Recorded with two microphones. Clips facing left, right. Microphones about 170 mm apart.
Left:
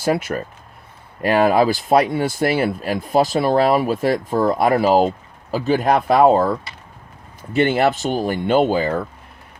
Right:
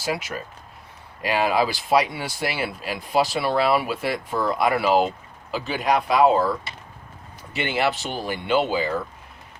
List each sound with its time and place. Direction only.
0.0 s speech: 55° left (ahead or behind)